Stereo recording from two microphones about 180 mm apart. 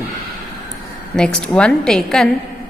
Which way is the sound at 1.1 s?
5° left (ahead or behind).